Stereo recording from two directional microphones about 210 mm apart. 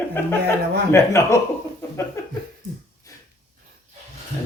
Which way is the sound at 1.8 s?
15° left (ahead or behind).